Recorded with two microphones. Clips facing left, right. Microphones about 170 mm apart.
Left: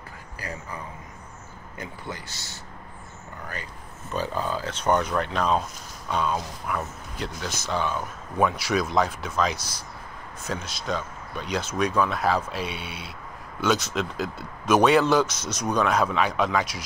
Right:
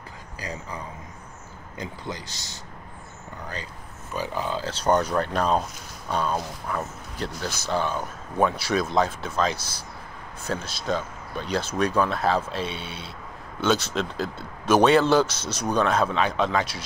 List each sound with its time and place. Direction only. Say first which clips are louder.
0.4 s speech: right 1 dB; 15° right (ahead or behind)
1.8 s speech: right 2 dB; 15° right (ahead or behind)
4.1 s speech: left 1 dB; 15° right (ahead or behind)
4.6 s speech: right 2 dB; 35° right (ahead or behind)